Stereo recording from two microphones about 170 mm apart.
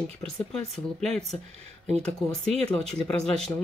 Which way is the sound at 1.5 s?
40° right (ahead or behind).